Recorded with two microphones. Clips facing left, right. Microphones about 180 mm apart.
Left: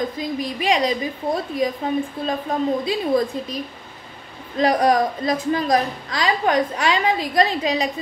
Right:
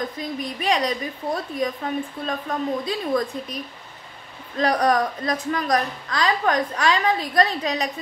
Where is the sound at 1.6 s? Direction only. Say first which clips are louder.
Left 4 dB; 25° left (ahead or behind).